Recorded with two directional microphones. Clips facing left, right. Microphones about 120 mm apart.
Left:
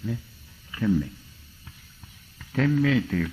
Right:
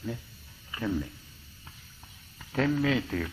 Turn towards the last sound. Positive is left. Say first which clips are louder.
# left 4 dB
turn(degrees=-25)  # may be behind; listen again after turning